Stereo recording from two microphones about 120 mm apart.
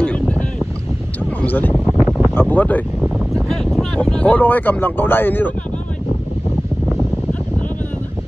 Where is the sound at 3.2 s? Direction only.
Centre (ahead or behind).